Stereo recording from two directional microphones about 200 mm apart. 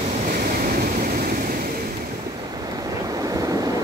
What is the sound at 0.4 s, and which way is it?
Vehicle, 45° right (ahead or behind).